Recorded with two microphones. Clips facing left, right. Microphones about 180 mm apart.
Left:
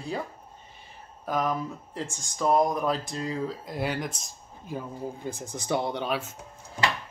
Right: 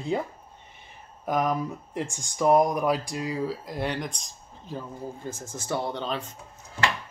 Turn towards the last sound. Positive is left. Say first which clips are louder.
# left 1 dB
turn(degrees=10)  # may be behind; listen again after turning